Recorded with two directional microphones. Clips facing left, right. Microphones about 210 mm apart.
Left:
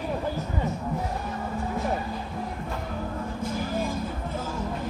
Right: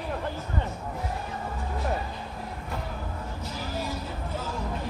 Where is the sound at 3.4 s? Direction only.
50° left (ahead or behind).